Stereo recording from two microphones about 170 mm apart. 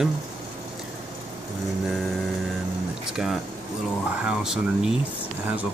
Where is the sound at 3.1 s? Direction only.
Centre (ahead or behind).